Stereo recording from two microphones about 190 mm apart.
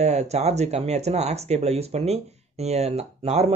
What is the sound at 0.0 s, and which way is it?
Speech, 35° right (ahead or behind).